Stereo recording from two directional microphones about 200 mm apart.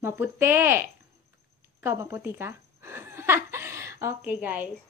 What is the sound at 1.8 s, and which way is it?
Chuckle, 15° right (ahead or behind).